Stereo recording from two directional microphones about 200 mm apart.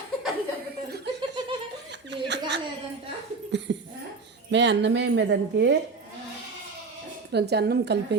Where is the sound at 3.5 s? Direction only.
65° right (ahead or behind).